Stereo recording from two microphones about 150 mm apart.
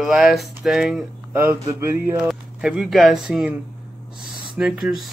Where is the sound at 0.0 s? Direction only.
Centre (ahead or behind).